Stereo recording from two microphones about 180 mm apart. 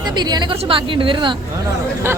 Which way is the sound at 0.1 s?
25° right (ahead or behind).